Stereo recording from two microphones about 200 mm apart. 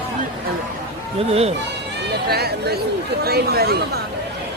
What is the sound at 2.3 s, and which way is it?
Speech, 55° right (ahead or behind).